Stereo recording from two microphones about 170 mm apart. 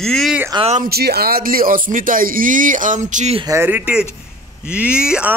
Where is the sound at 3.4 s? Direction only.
15° right (ahead or behind).